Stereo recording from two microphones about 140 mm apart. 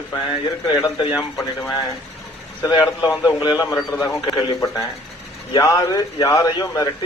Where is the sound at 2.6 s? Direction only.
25° left (ahead or behind).